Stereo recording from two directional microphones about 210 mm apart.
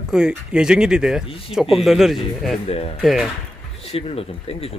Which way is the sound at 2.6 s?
30° left (ahead or behind).